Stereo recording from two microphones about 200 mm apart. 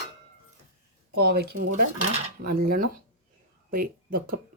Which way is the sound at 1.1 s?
50° right (ahead or behind).